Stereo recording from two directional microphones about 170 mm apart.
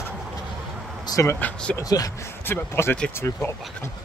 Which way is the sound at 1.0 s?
20° left (ahead or behind).